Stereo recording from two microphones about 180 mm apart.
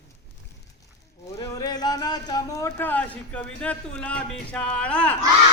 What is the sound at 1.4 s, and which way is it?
Speech, 20° left (ahead or behind).